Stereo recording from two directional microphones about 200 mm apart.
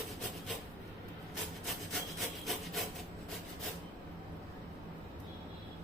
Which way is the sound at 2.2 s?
Centre (ahead or behind).